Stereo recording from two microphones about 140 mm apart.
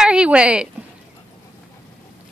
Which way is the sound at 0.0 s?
5° right (ahead or behind).